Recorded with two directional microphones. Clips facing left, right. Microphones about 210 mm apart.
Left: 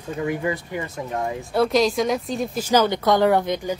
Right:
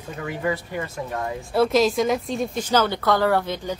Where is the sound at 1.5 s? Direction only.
Centre (ahead or behind).